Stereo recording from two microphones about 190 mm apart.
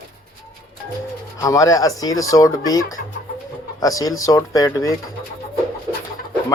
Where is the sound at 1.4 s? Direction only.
15° left (ahead or behind).